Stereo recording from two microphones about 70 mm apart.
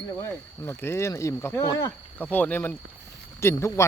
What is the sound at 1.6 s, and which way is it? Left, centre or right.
Speech, left.